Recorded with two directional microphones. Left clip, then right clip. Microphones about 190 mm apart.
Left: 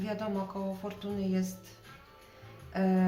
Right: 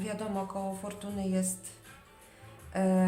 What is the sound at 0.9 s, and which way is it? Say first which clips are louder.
Speech: left 1 dB; 40° right (ahead or behind).